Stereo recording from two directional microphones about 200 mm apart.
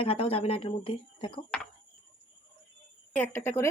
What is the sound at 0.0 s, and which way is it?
Speech, 30° left (ahead or behind).